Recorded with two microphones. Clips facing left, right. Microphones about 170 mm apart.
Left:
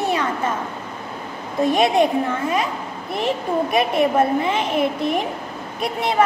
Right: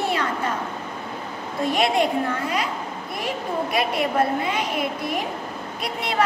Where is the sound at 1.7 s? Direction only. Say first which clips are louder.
Left 3 dB; 20° left (ahead or behind).